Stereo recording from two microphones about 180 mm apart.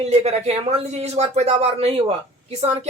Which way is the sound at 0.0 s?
35° right (ahead or behind).